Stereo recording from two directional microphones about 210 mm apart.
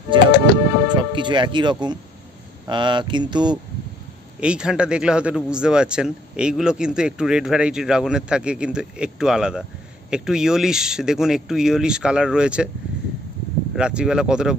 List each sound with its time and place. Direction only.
0.8 s speech: 20° right (ahead or behind)
4.4 s speech: 5° right (ahead or behind)
13.7 s speech: 5° right (ahead or behind)